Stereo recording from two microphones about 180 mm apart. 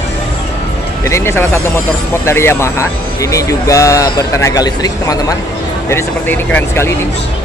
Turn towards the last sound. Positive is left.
turn(degrees=10)  # may be behind; listen again after turning